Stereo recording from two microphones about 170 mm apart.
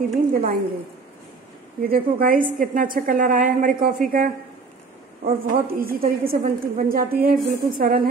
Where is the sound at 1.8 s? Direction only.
55° right (ahead or behind).